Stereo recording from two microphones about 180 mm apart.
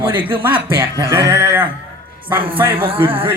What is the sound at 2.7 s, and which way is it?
Music, 30° right (ahead or behind).